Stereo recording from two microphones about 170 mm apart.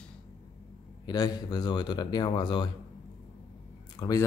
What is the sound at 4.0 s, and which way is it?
Speech, 20° left (ahead or behind).